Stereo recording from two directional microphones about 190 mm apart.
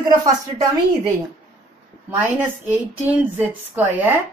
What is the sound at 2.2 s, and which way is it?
A woman's voice, 10° right (ahead or behind).